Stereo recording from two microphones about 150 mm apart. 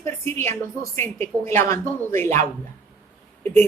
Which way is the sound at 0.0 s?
15° left (ahead or behind).